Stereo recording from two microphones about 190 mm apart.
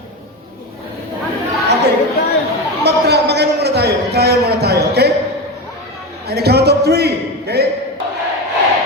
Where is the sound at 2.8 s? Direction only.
60° right (ahead or behind).